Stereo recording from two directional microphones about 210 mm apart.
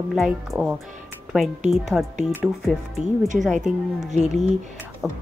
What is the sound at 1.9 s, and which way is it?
Speech, 5° right (ahead or behind).